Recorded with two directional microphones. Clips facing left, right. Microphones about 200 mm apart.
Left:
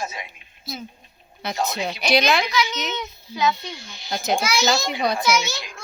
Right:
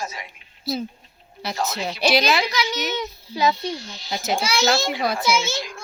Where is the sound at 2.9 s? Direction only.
35° right (ahead or behind).